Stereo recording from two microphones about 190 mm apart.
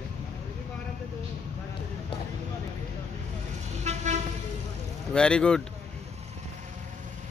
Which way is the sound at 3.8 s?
35° right (ahead or behind).